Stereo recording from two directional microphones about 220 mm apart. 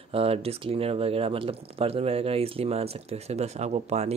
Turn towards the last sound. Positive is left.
turn(degrees=-30)  # may be behind; listen again after turning